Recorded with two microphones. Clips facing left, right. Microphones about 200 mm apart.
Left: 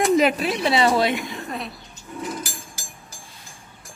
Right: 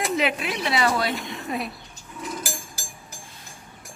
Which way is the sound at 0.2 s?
40° left (ahead or behind).